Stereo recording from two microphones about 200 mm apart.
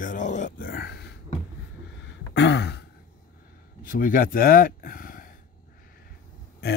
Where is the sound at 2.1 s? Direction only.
60° left (ahead or behind).